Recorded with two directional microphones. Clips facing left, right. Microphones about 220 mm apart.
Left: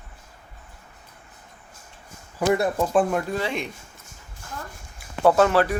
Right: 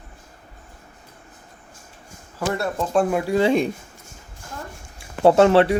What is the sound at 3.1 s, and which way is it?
Speech, 5° right (ahead or behind).